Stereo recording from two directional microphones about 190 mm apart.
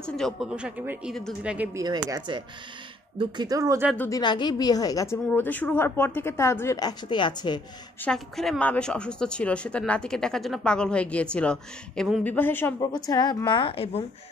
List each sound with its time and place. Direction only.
0.0 s a woman's voice: centre (ahead or behind); by 3.9 s 15° right (ahead or behind)
3.9 s a woman's voice: 10° left (ahead or behind)
4.2 s a woman's voice: 25° left (ahead or behind)
8.0 s a woman's voice: 5° left (ahead or behind)
12.9 s a woman's voice: 20° left (ahead or behind)